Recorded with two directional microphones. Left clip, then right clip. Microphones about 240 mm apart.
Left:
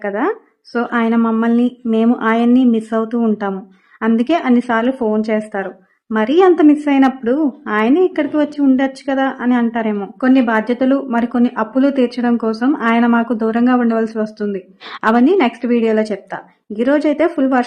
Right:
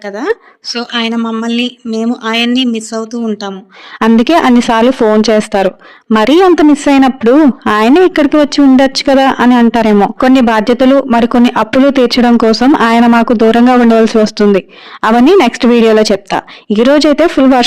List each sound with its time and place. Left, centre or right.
0.0 s speech: centre
1.2 s speech: centre
2.4 s speech: right
2.7 s speech: centre
4.0 s speech: right